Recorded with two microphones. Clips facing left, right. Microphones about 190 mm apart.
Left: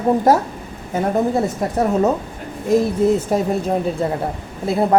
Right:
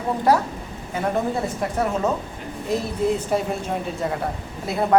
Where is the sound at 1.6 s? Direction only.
40° left (ahead or behind).